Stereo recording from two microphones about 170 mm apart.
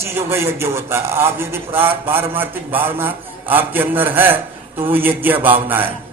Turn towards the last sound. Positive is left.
turn(degrees=-10)  # may be behind; listen again after turning